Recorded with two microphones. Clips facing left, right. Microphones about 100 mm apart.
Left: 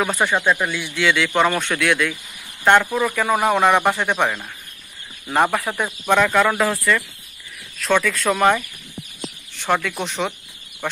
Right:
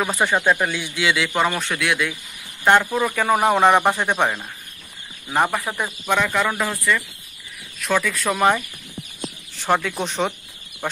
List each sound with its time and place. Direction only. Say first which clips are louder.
0.0 s speech: left 1 dB; 5° right (ahead or behind)
0.3 s speech: even; 35° right (ahead or behind)
0.9 s speech: left 3 dB; 10° right (ahead or behind)
5.3 s speech: left 2 dB; centre (ahead or behind)
8.0 s speech: left 2 dB; 15° right (ahead or behind)